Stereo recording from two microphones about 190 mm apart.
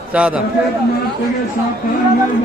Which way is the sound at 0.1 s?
5° right (ahead or behind).